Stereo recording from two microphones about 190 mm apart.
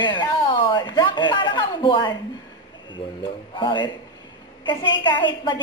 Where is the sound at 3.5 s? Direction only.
25° left (ahead or behind).